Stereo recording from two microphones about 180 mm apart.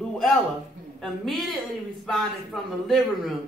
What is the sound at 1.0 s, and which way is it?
Speech, centre (ahead or behind).